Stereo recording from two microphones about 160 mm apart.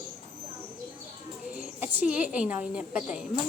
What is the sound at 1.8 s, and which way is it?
A woman's voice, 10° right (ahead or behind).